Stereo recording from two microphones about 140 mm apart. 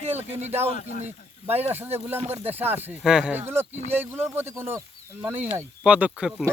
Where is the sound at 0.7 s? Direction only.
65° left (ahead or behind).